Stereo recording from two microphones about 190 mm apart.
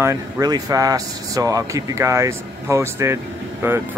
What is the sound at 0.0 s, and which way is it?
Speech, 15° right (ahead or behind).